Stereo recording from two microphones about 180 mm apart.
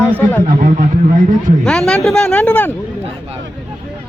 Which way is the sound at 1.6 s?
5° left (ahead or behind).